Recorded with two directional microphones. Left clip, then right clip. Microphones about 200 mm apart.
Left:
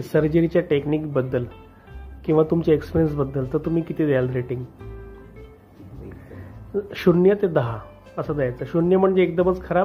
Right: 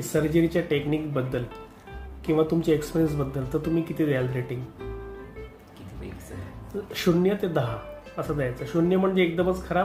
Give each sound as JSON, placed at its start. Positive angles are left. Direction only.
{"t": 0.1, "sound": "speech", "side_deg": 20}
{"t": 6.9, "sound": "speech", "side_deg": 25}